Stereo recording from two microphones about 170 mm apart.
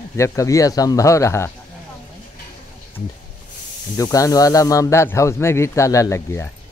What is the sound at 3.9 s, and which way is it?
Speech, 20° left (ahead or behind).